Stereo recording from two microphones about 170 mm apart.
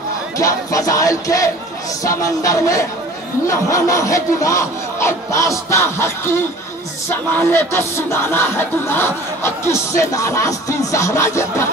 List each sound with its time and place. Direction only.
0.4 s music: 20° left (ahead or behind)